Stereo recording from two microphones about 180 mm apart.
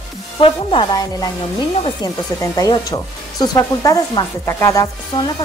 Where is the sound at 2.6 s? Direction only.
20° left (ahead or behind).